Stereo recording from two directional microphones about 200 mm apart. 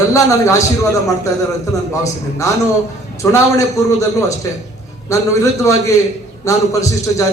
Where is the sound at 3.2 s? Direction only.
15° left (ahead or behind).